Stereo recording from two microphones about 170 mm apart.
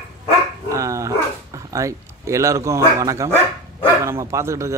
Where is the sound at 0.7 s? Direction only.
20° right (ahead or behind).